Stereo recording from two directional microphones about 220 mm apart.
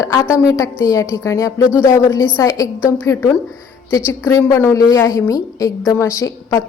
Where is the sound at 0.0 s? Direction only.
15° left (ahead or behind).